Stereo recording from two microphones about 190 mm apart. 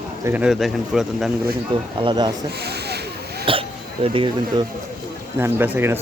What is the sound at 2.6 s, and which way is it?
Snake, 60° right (ahead or behind).